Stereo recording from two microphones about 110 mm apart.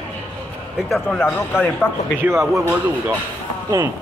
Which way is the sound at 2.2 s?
25° right (ahead or behind).